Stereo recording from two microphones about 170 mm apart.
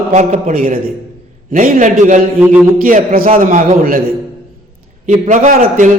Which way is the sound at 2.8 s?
55° right (ahead or behind).